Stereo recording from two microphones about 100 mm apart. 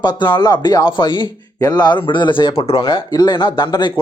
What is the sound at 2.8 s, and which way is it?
Speech, 45° left (ahead or behind).